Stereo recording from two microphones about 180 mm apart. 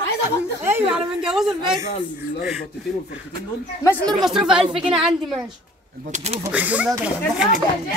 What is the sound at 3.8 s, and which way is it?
Speech, centre (ahead or behind).